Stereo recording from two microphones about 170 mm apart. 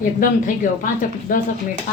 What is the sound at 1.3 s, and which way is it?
Speech, 50° left (ahead or behind).